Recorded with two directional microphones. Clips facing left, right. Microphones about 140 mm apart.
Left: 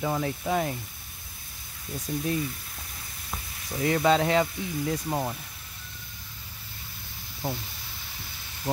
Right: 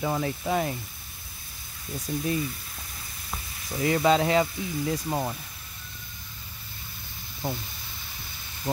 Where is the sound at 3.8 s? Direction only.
5° right (ahead or behind).